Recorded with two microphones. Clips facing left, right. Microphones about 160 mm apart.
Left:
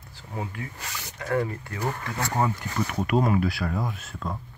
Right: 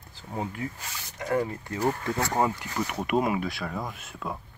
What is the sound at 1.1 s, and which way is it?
Speech, 20° right (ahead or behind).